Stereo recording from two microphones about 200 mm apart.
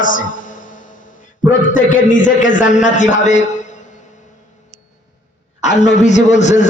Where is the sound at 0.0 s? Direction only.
40° left (ahead or behind).